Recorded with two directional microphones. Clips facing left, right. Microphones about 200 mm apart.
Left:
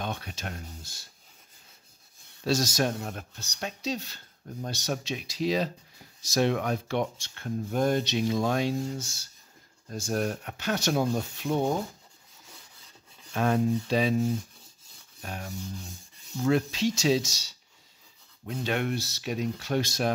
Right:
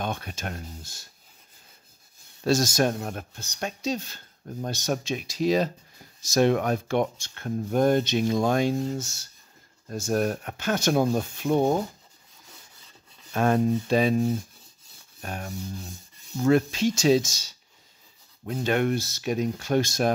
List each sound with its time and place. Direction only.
0.0 s speech: 50° right (ahead or behind)
2.4 s speech: 50° right (ahead or behind)
13.3 s speech: 50° right (ahead or behind)
15.2 s speech: 50° right (ahead or behind)